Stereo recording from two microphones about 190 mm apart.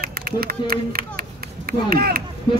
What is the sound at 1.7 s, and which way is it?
Speech, 55° right (ahead or behind).